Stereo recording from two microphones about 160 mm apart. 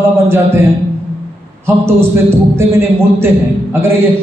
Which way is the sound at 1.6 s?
15° right (ahead or behind).